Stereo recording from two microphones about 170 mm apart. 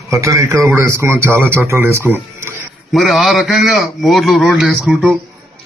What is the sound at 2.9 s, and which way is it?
A man's voice, centre (ahead or behind).